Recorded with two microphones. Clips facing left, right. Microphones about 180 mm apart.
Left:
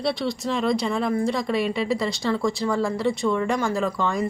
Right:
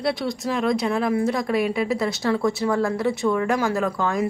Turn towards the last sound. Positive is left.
turn(degrees=0)  # may be behind; listen again after turning